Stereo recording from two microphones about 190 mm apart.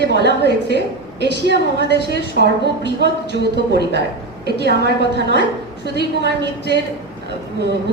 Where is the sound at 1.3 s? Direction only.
60° right (ahead or behind).